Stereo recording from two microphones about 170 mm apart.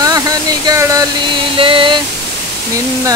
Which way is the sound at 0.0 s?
20° right (ahead or behind).